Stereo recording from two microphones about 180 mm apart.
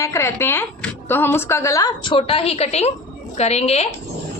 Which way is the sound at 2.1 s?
30° left (ahead or behind).